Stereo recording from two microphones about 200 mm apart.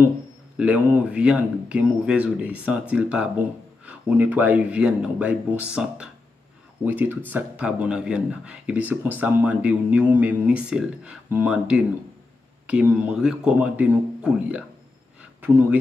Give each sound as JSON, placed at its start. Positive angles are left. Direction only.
{"t": 0.6, "sound": "speech", "side_deg": -5}